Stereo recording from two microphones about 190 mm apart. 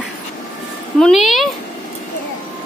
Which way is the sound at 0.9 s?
Centre (ahead or behind).